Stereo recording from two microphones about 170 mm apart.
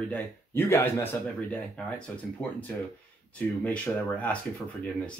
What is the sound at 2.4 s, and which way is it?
Speech, 10° left (ahead or behind).